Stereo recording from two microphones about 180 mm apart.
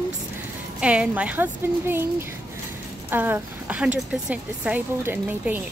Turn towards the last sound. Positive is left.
turn(degrees=-10)  # may be behind; listen again after turning